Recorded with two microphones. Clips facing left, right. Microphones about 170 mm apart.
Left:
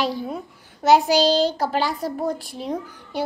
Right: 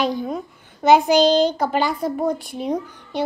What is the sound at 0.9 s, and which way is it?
Child singing, 50° right (ahead or behind).